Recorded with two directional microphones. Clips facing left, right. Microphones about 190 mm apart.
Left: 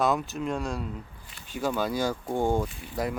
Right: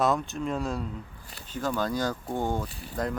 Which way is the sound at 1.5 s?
10° left (ahead or behind).